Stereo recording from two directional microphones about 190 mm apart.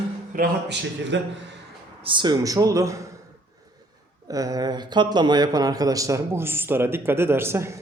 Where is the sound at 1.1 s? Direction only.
75° right (ahead or behind).